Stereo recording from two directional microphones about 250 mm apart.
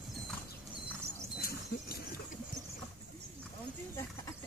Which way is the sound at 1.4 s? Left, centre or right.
Left.